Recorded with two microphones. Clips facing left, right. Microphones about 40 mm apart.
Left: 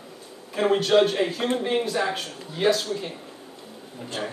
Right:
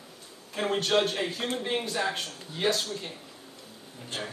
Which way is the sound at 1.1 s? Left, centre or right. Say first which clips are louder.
Left 7 dB; left.